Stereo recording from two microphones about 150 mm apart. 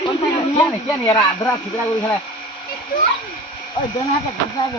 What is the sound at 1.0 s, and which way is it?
Speech, 20° left (ahead or behind).